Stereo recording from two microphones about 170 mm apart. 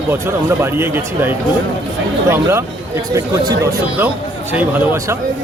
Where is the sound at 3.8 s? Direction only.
10° right (ahead or behind).